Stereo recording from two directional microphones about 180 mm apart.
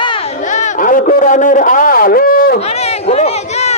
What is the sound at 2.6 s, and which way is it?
Run, 35° left (ahead or behind).